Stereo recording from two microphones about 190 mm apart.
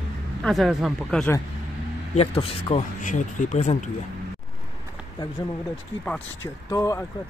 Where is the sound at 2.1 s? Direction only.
30° left (ahead or behind).